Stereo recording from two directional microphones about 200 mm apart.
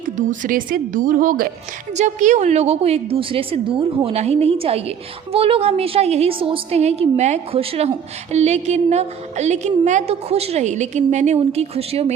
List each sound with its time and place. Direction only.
0.2 s a woman's voice: 40° right (ahead or behind)